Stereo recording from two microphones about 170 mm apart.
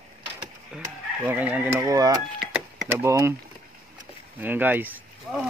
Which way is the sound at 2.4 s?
5° right (ahead or behind).